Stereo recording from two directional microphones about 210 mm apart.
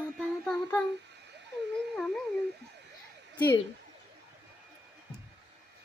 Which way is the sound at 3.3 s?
10° left (ahead or behind).